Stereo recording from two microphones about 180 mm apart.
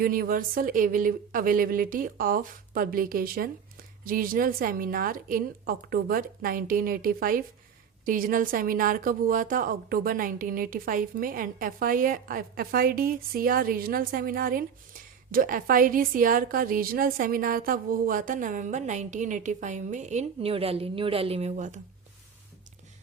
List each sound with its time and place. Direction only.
0.0 s a woman's voice: 50° right (ahead or behind)